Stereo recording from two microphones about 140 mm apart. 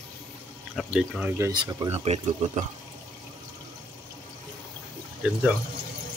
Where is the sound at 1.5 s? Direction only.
30° right (ahead or behind).